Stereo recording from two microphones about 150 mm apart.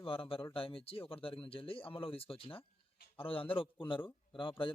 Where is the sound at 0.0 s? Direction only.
35° left (ahead or behind).